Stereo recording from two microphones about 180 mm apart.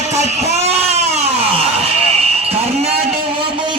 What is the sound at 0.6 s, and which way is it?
Baby cry, 35° right (ahead or behind).